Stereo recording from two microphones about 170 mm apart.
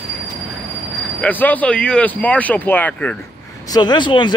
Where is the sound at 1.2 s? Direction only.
10° left (ahead or behind).